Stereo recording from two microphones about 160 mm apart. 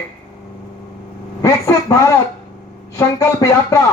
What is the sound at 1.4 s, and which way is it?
A man's voice, 20° left (ahead or behind).